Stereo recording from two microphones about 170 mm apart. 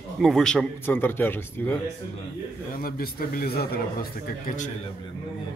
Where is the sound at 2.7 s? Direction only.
60° left (ahead or behind).